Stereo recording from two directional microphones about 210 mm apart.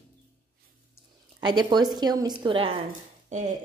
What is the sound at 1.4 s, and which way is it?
A woman's voice, 20° right (ahead or behind).